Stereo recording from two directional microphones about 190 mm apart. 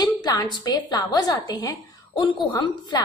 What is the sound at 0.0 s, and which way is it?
A woman's voice, 20° left (ahead or behind).